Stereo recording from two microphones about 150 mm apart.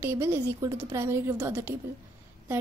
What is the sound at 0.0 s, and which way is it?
A woman's voice, 15° right (ahead or behind).